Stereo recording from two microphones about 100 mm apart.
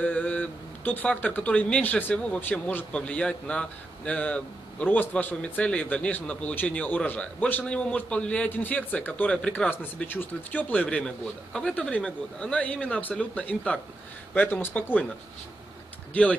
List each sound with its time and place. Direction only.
0.0 s speech: 15° left (ahead or behind)
16.1 s speech: 15° left (ahead or behind)